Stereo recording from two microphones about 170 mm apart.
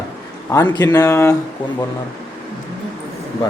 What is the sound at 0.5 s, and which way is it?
Speech, 20° left (ahead or behind).